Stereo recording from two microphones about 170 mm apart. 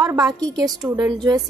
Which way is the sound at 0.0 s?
20° right (ahead or behind).